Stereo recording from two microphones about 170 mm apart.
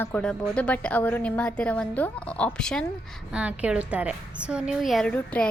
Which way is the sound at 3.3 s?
5° right (ahead or behind).